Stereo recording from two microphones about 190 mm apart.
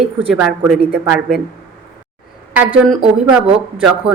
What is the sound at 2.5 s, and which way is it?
A woman's voice, 5° right (ahead or behind).